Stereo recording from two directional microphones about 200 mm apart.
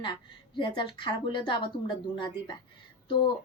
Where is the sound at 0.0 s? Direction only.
25° left (ahead or behind).